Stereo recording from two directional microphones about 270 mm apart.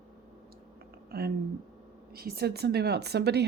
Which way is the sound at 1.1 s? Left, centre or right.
Right.